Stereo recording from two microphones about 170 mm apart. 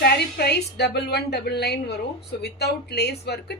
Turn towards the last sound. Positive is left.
turn(degrees=75)  # may be behind; listen again after turning